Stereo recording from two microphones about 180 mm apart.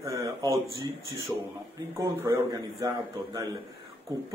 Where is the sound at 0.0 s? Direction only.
20° right (ahead or behind).